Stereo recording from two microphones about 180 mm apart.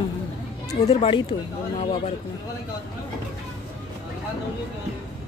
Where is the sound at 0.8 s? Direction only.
35° left (ahead or behind).